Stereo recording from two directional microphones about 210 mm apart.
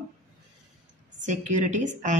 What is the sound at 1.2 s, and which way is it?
Speech, 35° right (ahead or behind).